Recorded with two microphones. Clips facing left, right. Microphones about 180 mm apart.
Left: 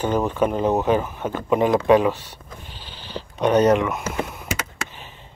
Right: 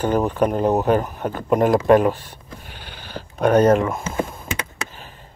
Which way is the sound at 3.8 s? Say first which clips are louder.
Right 1 dB; 30° right (ahead or behind).